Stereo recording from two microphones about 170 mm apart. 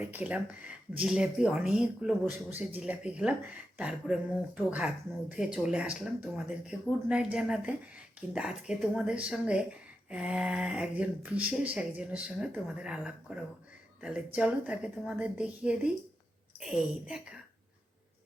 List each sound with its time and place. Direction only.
0.0 s speech: 10° right (ahead or behind)